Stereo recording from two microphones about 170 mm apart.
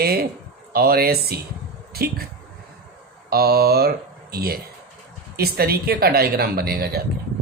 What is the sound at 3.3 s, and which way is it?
Speech, 65° right (ahead or behind).